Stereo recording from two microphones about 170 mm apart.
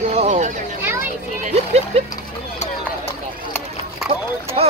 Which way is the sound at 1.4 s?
40° right (ahead or behind).